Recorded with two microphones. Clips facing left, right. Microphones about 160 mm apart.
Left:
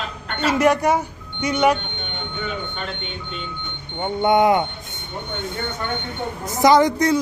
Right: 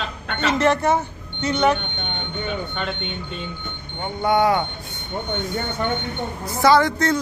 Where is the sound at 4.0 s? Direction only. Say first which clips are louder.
Left 3 dB; 20° left (ahead or behind).